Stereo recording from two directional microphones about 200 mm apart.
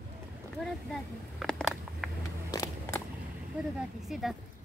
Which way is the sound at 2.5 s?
15° left (ahead or behind).